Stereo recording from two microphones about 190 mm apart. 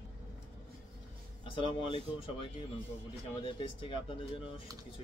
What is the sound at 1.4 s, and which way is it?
Speech, 25° left (ahead or behind).